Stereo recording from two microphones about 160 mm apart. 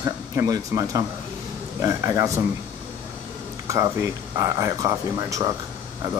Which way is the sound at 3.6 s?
20° right (ahead or behind).